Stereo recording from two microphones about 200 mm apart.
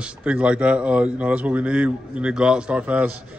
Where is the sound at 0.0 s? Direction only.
5° right (ahead or behind).